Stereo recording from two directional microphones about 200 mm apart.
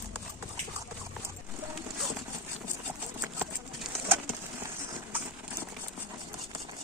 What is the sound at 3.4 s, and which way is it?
Bird, 5° right (ahead or behind).